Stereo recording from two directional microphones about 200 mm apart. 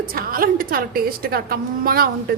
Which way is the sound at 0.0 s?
45° right (ahead or behind).